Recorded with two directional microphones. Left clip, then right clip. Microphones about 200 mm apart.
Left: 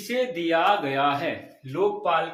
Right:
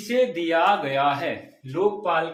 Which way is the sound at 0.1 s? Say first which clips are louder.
Right 3 dB; 15° right (ahead or behind).